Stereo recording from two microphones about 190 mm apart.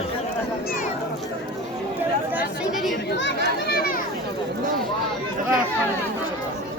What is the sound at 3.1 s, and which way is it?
Speech, 70° left (ahead or behind).